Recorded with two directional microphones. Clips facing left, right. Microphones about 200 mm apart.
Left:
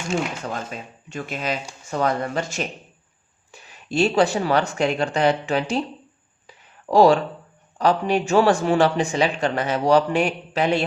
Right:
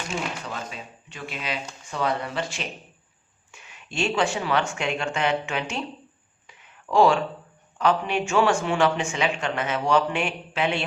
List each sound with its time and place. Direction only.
0.4 s speech: 45° left (ahead or behind)
6.5 s a sound: 35° left (ahead or behind)
7.8 s speech: 35° left (ahead or behind)